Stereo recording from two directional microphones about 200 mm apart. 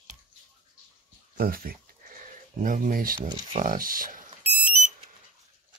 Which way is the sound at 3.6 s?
40° right (ahead or behind).